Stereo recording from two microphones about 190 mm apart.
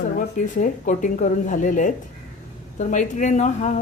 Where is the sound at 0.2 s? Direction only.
45° left (ahead or behind).